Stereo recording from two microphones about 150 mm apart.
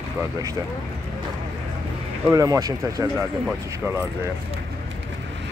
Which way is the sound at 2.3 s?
20° right (ahead or behind).